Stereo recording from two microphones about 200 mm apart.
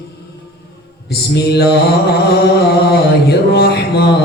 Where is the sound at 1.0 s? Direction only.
55° left (ahead or behind).